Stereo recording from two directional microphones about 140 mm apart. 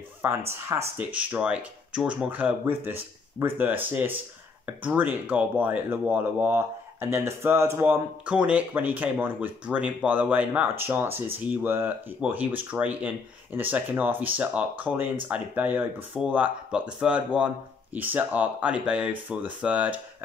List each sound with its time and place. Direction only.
0.5 s speech: 20° right (ahead or behind)
1.1 s speech: 10° right (ahead or behind)